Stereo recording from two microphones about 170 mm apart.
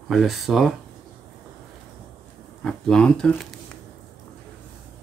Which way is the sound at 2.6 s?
5° left (ahead or behind).